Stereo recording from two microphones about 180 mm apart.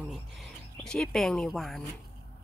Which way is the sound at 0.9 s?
5° left (ahead or behind).